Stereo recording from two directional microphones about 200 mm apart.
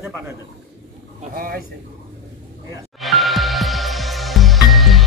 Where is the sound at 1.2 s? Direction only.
45° right (ahead or behind).